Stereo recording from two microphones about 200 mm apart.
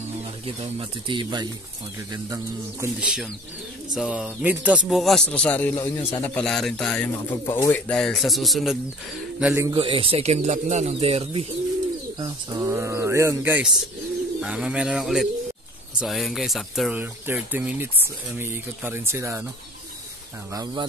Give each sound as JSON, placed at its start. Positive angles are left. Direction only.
{"t": 0.5, "sound": "speech", "side_deg": -30}
{"t": 3.0, "sound": "speech", "side_deg": -5}
{"t": 9.7, "sound": "speech", "side_deg": -25}
{"t": 12.2, "sound": "speech", "side_deg": -20}
{"t": 20.5, "sound": "speech", "side_deg": -20}